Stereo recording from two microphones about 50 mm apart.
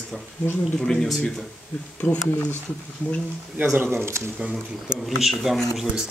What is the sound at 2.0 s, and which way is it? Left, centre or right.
Speech, left.